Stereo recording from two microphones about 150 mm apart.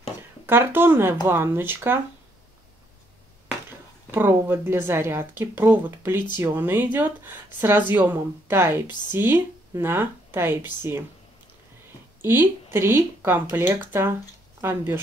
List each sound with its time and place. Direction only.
0.5 s speech: 15° right (ahead or behind)
4.1 s speech: 15° right (ahead or behind)
12.2 s speech: 15° right (ahead or behind)